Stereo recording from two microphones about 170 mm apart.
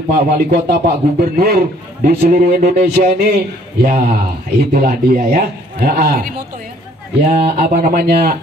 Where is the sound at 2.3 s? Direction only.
65° right (ahead or behind).